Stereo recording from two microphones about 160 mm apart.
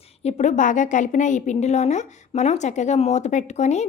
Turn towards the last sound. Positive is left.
turn(degrees=45)  # may be behind; listen again after turning